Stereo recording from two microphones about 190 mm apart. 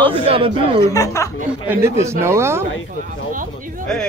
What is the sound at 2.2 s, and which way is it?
Speech, 15° right (ahead or behind).